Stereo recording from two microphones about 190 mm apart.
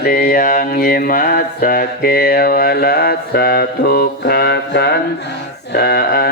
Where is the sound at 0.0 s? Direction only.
55° left (ahead or behind).